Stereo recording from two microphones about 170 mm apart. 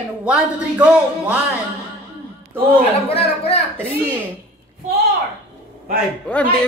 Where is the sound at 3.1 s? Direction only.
35° left (ahead or behind).